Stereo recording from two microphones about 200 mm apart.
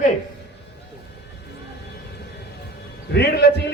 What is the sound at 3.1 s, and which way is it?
Speech, 55° left (ahead or behind).